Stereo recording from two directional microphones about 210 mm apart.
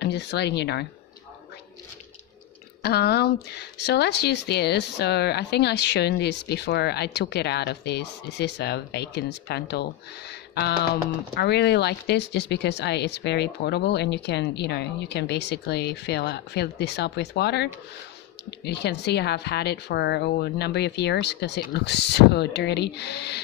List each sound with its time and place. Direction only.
0.0 s speech: 55° left (ahead or behind)
2.8 s speech: 50° left (ahead or behind)